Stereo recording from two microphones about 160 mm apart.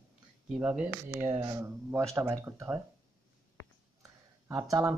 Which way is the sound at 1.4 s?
20° right (ahead or behind).